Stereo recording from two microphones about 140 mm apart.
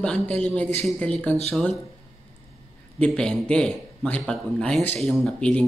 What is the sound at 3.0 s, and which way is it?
A man's voice, 5° left (ahead or behind).